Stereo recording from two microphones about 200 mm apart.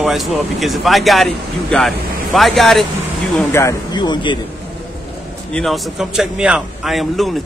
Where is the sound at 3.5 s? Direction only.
20° left (ahead or behind).